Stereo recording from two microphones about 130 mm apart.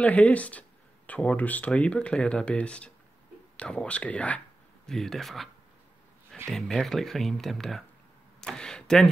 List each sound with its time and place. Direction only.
0.0 s speech: 10° left (ahead or behind)
6.5 s speech: centre (ahead or behind)